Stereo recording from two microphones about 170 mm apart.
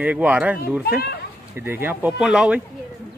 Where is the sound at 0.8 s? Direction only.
70° left (ahead or behind).